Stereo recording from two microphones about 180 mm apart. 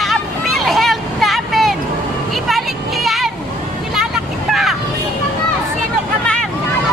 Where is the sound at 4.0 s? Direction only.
Centre (ahead or behind).